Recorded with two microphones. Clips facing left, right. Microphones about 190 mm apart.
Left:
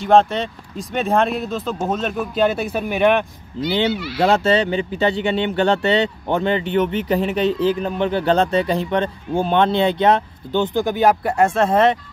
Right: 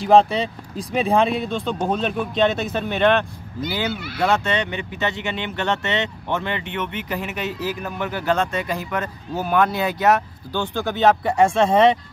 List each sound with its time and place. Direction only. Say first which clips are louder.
0.0 s speech: even; centre (ahead or behind)
3.9 s speech: left 5 dB; 50° right (ahead or behind)
4.2 s speech: left 5 dB; 35° left (ahead or behind); by 12.0 s centre (ahead or behind)